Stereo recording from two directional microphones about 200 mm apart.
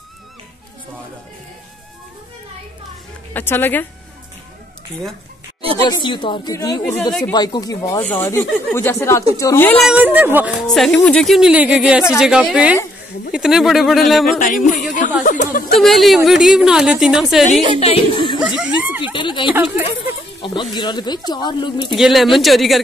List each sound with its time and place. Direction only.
3.3 s speech: 10° left (ahead or behind)
5.8 s speech: 20° left (ahead or behind)
9.8 s speech: 10° right (ahead or behind)
10.7 s speech: 5° left (ahead or behind)
14.8 s chatter: 40° left (ahead or behind)
15.2 s speech: 40° left (ahead or behind)
15.7 s speech: centre (ahead or behind)
17.7 s speech: 30° left (ahead or behind)
18.6 s a sound: 5° right (ahead or behind)
19.1 s speech: 25° left (ahead or behind)
19.5 s speech: 10° right (ahead or behind)
20.7 s speech: 20° left (ahead or behind)
21.9 s speech: centre (ahead or behind)